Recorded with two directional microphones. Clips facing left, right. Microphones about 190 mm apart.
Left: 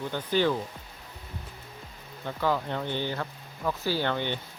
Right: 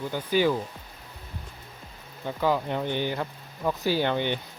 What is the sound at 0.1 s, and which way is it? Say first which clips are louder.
Speech: right 2 dB; 10° right (ahead or behind).